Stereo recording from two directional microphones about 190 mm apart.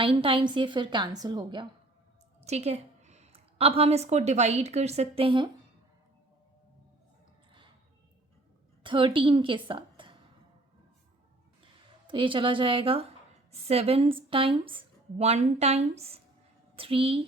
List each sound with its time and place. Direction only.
0.0 s a woman's voice: 25° right (ahead or behind)
2.4 s a woman's voice: 35° right (ahead or behind)
8.8 s a woman's voice: 25° right (ahead or behind)
12.0 s a woman's voice: 25° right (ahead or behind)